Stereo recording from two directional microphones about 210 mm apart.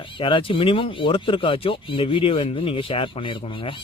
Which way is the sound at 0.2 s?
25° left (ahead or behind).